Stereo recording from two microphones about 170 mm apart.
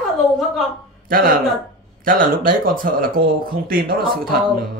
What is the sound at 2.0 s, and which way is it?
Speech, 55° right (ahead or behind).